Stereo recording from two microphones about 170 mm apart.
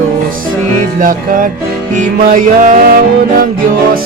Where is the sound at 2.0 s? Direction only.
50° right (ahead or behind).